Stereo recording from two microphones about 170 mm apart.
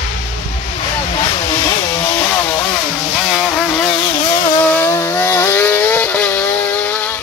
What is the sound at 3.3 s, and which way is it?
Vehicle, 5° left (ahead or behind).